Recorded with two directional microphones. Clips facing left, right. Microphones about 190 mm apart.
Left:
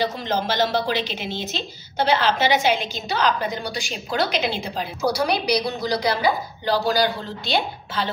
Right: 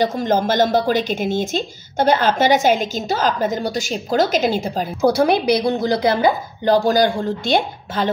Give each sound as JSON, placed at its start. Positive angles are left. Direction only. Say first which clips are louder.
{"t": 0.0, "sound": "a woman's voice", "louder": "right 6 dB", "side_deg": -50}